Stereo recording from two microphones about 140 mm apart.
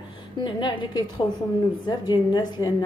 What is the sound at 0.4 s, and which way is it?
A woman's voice, 35° left (ahead or behind).